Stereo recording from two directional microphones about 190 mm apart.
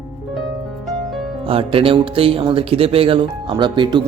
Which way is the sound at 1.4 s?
30° right (ahead or behind).